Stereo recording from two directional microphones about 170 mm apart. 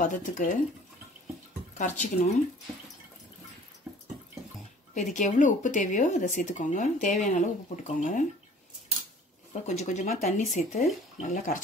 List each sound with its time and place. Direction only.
0.0 s speech: 50° left (ahead or behind)
1.8 s speech: 45° left (ahead or behind)
3.9 s a sound: 5° right (ahead or behind)
4.9 s speech: 45° left (ahead or behind)
9.5 s speech: 45° left (ahead or behind)